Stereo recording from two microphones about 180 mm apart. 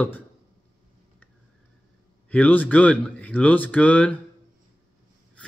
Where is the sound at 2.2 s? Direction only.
10° left (ahead or behind).